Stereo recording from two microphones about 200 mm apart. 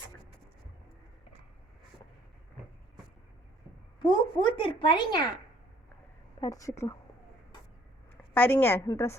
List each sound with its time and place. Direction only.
4.1 s speech: 25° left (ahead or behind)
6.4 s a woman's voice: 15° left (ahead or behind)
8.3 s a woman's voice: 10° left (ahead or behind)